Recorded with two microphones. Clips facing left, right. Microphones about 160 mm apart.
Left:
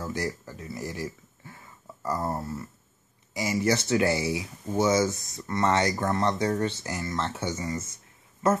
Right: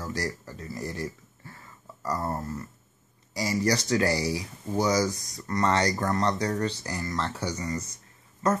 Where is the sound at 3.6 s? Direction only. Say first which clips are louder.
Left 1 dB; 25° left (ahead or behind).